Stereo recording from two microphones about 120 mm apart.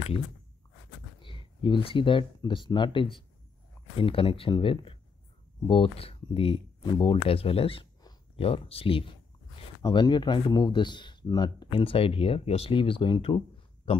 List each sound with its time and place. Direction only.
1.2 s speech: 45° left (ahead or behind)
9.8 s speech: 30° left (ahead or behind)
11.8 s speech: 50° left (ahead or behind)